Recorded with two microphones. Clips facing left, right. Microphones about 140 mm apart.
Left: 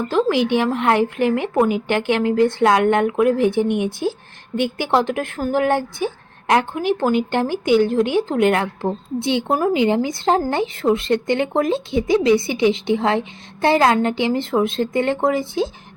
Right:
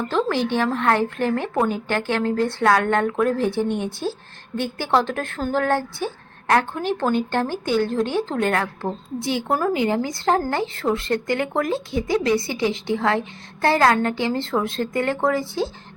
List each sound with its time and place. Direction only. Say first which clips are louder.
0.1 s a woman's voice: left 5 dB; 15° left (ahead or behind)